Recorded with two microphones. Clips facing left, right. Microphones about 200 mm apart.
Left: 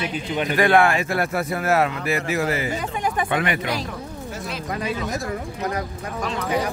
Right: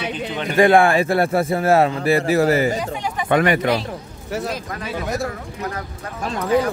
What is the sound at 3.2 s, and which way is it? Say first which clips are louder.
Speech: right 6 dB; 45° right (ahead or behind).